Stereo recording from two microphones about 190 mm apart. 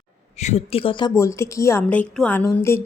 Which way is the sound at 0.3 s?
35° left (ahead or behind).